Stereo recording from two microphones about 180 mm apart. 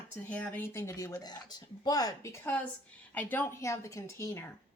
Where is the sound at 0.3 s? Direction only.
10° left (ahead or behind).